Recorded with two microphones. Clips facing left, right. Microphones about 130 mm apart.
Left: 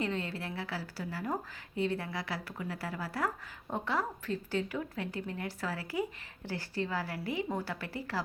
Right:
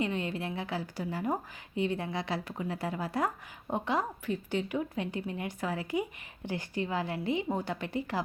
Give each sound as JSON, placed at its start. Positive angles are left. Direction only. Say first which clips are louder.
{"t": 0.0, "sound": "a woman's voice", "louder": "right 3 dB", "side_deg": -20}